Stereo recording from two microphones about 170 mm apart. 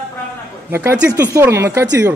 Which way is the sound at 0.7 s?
15° right (ahead or behind).